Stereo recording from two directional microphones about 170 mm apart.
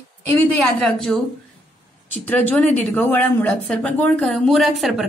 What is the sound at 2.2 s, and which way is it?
A woman's voice, 10° left (ahead or behind).